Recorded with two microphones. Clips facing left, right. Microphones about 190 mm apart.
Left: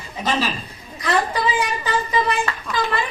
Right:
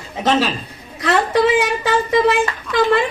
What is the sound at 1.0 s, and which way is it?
A man's voice, 70° right (ahead or behind).